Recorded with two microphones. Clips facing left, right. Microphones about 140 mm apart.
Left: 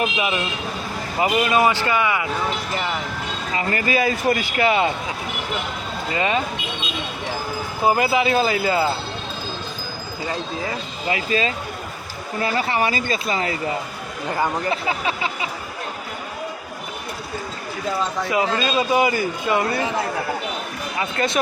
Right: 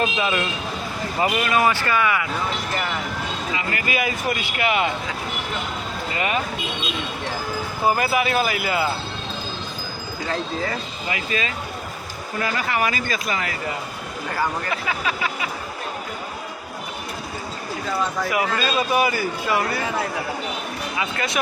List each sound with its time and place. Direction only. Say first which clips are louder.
0.0 s speech: even; 15° left (ahead or behind)
3.5 s speech: left 6 dB; 35° left (ahead or behind)
6.1 s speech: left 3 dB; 25° left (ahead or behind)
7.9 s speech: left 2 dB; 20° left (ahead or behind)
11.1 s speech: left 5 dB; 30° left (ahead or behind)
18.3 s speech: left 2 dB; 25° left (ahead or behind)
21.2 s speech: left 5 dB; 35° left (ahead or behind)